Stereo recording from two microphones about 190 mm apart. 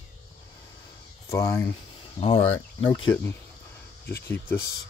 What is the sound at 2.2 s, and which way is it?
Speech, 30° left (ahead or behind).